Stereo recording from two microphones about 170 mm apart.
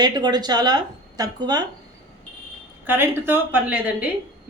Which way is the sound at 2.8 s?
10° right (ahead or behind).